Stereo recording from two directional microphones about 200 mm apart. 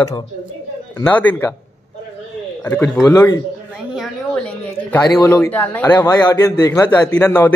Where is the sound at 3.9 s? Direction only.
5° left (ahead or behind).